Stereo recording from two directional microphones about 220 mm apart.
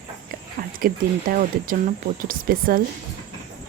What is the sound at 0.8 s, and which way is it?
Speech, 40° right (ahead or behind).